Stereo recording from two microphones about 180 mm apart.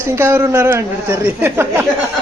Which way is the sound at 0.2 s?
15° right (ahead or behind).